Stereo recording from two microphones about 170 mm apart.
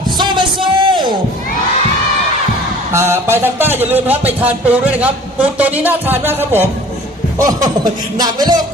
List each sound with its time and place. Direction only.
0.2 s music: 25° right (ahead or behind)
2.9 s speech: 15° right (ahead or behind)
7.3 s music: 20° right (ahead or behind)